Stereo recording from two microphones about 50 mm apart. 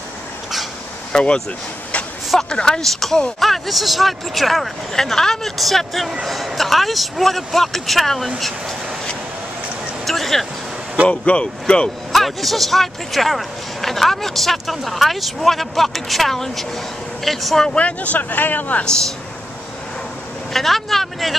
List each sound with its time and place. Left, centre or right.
1.1 s speech: centre
2.5 s speech: centre
8.4 s a sound: centre
11.1 s speech: left
12.1 s speech: centre
17.7 s speech: left
18.9 s speech: centre
20.5 s speech: centre